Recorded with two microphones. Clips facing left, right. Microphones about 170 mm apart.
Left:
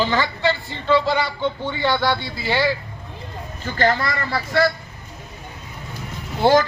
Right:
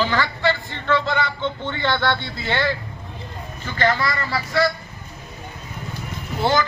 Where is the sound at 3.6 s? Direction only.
40° left (ahead or behind).